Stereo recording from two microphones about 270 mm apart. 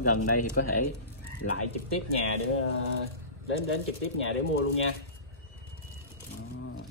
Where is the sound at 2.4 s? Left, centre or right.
Left.